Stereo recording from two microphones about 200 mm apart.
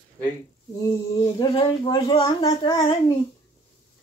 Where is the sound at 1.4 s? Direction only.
20° left (ahead or behind).